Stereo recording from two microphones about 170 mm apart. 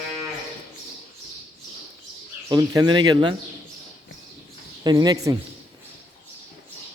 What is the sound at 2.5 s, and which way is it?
Speech, 25° right (ahead or behind).